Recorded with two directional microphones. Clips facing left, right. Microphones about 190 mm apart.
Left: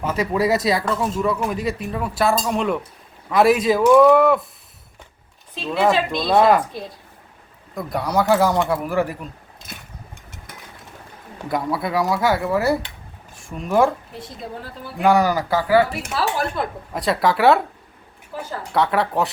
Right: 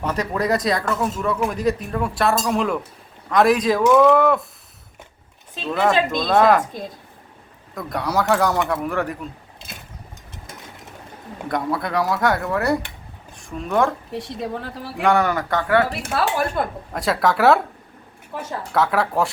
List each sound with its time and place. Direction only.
0.0 s speech: 5° left (ahead or behind)
5.8 s speech: 5° left (ahead or behind)
7.8 s speech: centre (ahead or behind)
11.4 s speech: 5° left (ahead or behind)
14.1 s a woman's voice: 80° right
15.0 s speech: centre (ahead or behind)
18.7 s speech: centre (ahead or behind)